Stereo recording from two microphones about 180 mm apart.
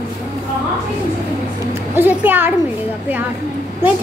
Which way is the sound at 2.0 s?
10° right (ahead or behind).